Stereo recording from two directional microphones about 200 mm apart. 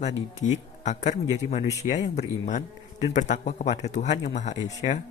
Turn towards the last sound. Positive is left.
turn(degrees=35)  # may be behind; listen again after turning